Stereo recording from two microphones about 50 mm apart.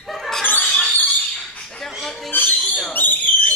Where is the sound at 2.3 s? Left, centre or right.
Left.